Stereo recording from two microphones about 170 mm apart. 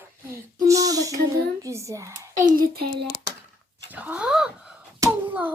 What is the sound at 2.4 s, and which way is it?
Speech, 60° right (ahead or behind).